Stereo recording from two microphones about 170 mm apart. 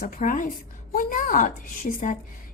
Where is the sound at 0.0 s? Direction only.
50° left (ahead or behind).